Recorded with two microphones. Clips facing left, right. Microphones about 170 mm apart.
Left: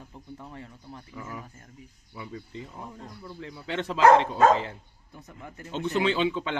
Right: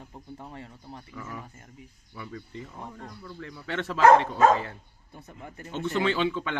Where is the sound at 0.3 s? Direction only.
30° right (ahead or behind).